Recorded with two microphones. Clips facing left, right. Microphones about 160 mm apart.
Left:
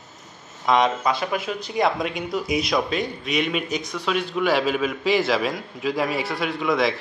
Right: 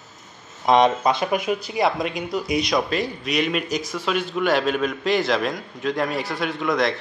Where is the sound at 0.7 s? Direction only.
25° right (ahead or behind).